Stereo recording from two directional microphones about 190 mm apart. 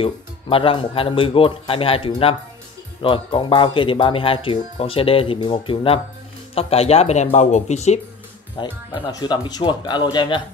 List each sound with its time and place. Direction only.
0.0 s speech: 30° left (ahead or behind)
8.5 s speech: 25° left (ahead or behind)